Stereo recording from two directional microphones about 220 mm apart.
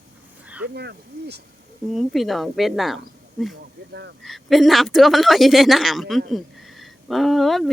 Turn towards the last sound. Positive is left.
turn(degrees=0)  # may be behind; listen again after turning